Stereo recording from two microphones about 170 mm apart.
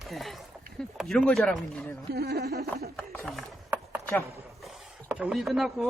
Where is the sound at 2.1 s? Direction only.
70° right (ahead or behind).